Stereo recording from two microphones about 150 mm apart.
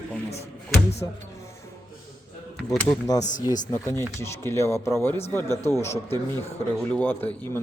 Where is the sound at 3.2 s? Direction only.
55° left (ahead or behind).